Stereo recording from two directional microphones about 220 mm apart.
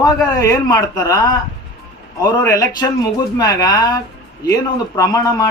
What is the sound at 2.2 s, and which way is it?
Speech, 15° left (ahead or behind).